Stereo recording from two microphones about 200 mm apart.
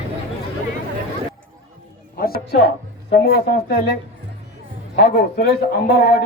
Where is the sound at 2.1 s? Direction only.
50° left (ahead or behind).